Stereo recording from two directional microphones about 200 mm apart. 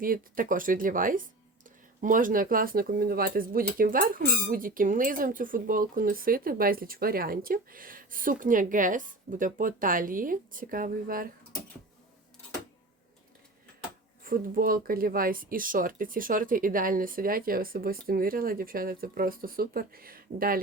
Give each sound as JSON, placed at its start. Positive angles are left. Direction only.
{"t": 0.0, "sound": "speech", "side_deg": -45}
{"t": 14.3, "sound": "speech", "side_deg": -45}